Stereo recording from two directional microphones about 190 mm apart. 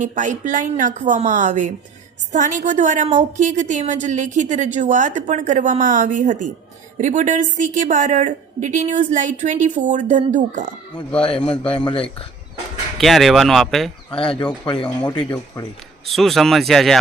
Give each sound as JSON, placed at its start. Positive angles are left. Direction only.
{"t": 0.0, "sound": "a woman's voice", "side_deg": -40}
{"t": 11.8, "sound": "speech", "side_deg": 25}
{"t": 13.0, "sound": "speech", "side_deg": 0}
{"t": 14.1, "sound": "speech", "side_deg": 25}
{"t": 16.0, "sound": "speech", "side_deg": 0}